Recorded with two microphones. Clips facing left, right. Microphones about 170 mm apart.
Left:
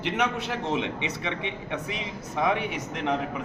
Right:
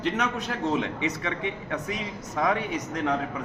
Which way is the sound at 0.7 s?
20° left (ahead or behind).